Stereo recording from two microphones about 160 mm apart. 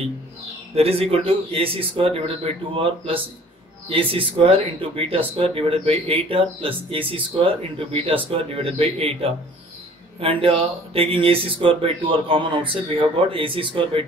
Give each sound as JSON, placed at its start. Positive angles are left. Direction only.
{"t": 0.7, "sound": "speech", "side_deg": -40}